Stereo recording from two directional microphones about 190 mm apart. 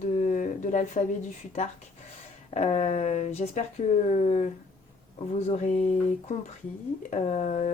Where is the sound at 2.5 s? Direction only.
35° left (ahead or behind).